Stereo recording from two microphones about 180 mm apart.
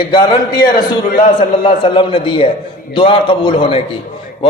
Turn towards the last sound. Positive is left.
turn(degrees=30)  # may be behind; listen again after turning